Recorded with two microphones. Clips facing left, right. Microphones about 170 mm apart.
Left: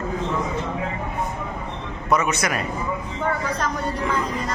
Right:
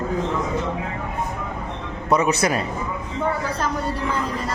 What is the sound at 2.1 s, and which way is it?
Speech, 30° right (ahead or behind).